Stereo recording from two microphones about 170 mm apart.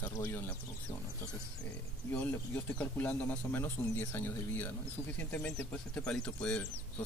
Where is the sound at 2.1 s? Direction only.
10° left (ahead or behind).